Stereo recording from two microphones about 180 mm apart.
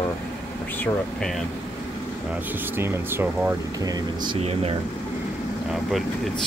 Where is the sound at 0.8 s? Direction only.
5° left (ahead or behind).